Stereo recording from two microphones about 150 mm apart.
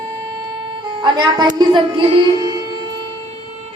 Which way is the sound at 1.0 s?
30° right (ahead or behind).